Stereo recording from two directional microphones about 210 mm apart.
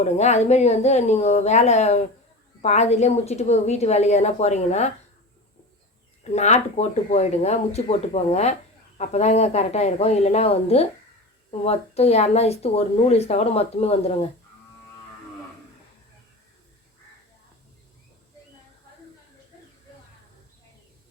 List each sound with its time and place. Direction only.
0.0 s a woman's voice: 30° left (ahead or behind)
6.3 s a woman's voice: 35° left (ahead or behind)